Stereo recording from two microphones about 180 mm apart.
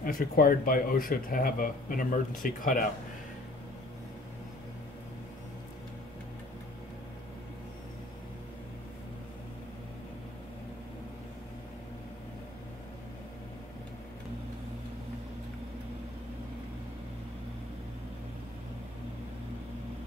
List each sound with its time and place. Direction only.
0.0 s speech: 55° left (ahead or behind)